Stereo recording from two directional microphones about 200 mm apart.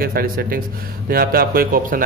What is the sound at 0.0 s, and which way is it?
A man's voice, 50° right (ahead or behind).